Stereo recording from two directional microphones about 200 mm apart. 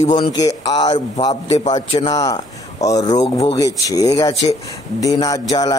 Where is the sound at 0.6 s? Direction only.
20° left (ahead or behind).